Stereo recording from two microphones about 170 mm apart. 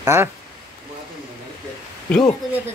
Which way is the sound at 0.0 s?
15° right (ahead or behind).